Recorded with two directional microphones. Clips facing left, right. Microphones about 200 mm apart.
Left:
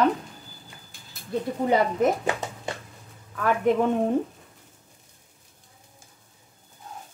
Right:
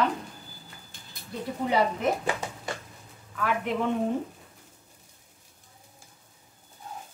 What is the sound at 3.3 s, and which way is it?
Speech, 45° left (ahead or behind).